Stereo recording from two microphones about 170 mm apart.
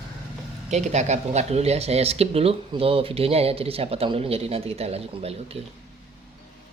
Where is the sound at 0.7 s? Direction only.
40° right (ahead or behind).